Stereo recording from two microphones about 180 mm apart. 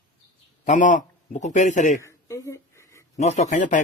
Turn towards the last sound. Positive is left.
turn(degrees=45)  # may be behind; listen again after turning